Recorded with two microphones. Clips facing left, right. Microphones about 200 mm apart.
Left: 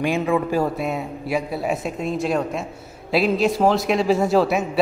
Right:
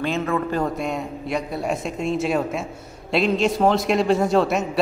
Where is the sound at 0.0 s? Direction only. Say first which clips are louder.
Left 3 dB; 10° left (ahead or behind).